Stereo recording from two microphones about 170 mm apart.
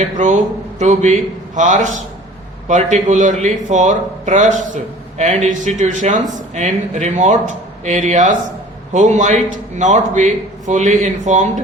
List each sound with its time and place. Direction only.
0.8 s a man's voice: 45° right (ahead or behind)